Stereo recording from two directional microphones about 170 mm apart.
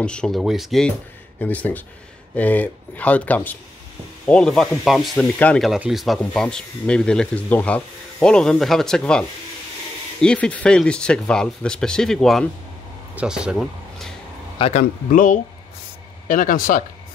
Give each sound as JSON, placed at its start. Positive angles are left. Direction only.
{"t": 0.0, "sound": "speech", "side_deg": 5}
{"t": 10.2, "sound": "speech", "side_deg": 5}
{"t": 14.6, "sound": "speech", "side_deg": 45}